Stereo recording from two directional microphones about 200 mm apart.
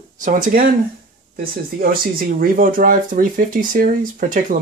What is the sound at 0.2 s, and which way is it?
Speech, 40° right (ahead or behind).